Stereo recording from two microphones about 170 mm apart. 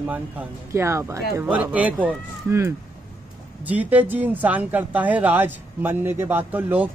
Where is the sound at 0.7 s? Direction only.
15° right (ahead or behind).